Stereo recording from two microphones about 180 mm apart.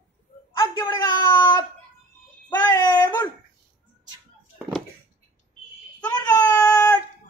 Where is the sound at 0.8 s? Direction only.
25° left (ahead or behind).